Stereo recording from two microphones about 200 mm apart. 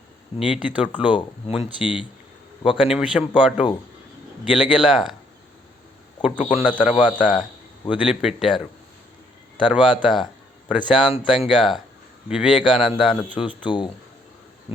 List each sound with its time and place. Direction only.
0.3 s speech: 5° right (ahead or behind)
6.5 s a man's voice: 5° right (ahead or behind)
9.6 s a man's voice: 5° right (ahead or behind)
13.7 s speech: 25° left (ahead or behind)